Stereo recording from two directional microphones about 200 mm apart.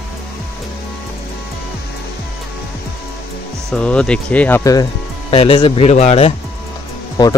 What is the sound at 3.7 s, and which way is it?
Speech, 5° left (ahead or behind).